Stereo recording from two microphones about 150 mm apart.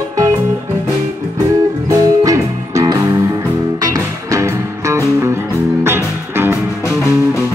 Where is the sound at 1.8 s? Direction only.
20° right (ahead or behind).